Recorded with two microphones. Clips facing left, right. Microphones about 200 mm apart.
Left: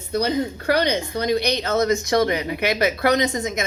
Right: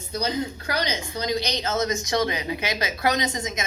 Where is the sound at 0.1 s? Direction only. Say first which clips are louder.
Left 5 dB; 60° left (ahead or behind).